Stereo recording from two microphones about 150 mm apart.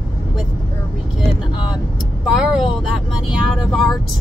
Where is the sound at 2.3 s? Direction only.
Centre (ahead or behind).